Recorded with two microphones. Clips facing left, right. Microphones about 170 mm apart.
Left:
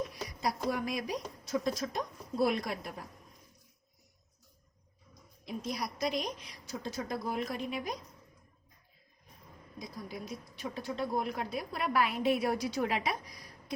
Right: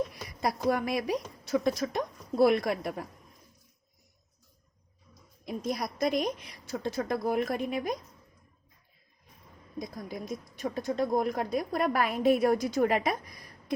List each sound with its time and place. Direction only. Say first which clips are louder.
0.4 s a woman's voice: right 5 dB; 60° right (ahead or behind)
5.5 s speech: right 4 dB; 50° right (ahead or behind)
9.7 s speech: right 5 dB; 50° right (ahead or behind)